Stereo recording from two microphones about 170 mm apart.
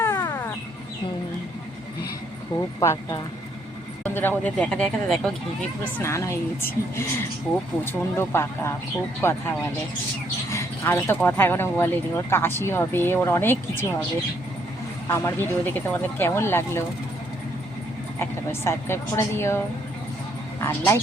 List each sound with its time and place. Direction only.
0.0 s a sound: 20° left (ahead or behind)
2.6 s speech: 20° left (ahead or behind); by 5.3 s centre (ahead or behind)
6.0 s speech: 15° left (ahead or behind)
10.5 s speech: 15° left (ahead or behind)
15.0 s speech: 15° left (ahead or behind)
18.2 s speech: 15° left (ahead or behind)